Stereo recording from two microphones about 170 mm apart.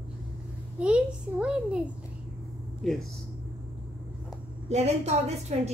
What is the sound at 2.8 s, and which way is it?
Speech, centre (ahead or behind).